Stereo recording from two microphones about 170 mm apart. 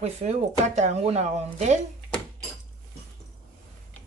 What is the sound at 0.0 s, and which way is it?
Speech, 40° right (ahead or behind).